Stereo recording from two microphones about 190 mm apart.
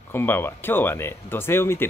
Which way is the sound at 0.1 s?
10° left (ahead or behind).